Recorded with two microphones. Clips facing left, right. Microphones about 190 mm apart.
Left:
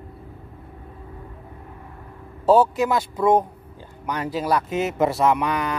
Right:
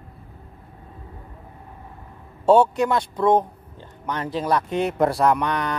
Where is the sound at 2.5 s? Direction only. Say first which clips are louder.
Right 1 dB; centre (ahead or behind).